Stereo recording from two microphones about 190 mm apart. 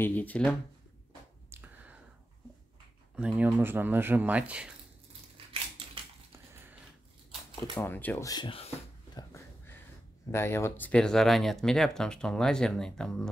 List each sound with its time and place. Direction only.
0.0 s speech: 10° left (ahead or behind)
1.5 s a sound: 10° right (ahead or behind)
3.2 s speech: 5° right (ahead or behind)
7.7 s speech: 10° left (ahead or behind); by 9.2 s 30° left (ahead or behind)
10.3 s speech: 15° left (ahead or behind)